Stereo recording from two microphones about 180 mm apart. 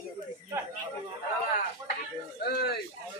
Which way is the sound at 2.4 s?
60° left (ahead or behind).